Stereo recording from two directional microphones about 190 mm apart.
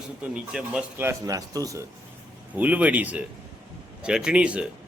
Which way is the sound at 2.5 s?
10° right (ahead or behind).